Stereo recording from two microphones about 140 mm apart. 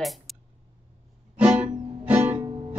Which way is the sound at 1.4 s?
10° right (ahead or behind).